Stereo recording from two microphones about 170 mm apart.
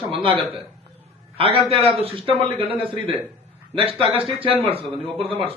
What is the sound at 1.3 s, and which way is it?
A man's voice, 35° right (ahead or behind).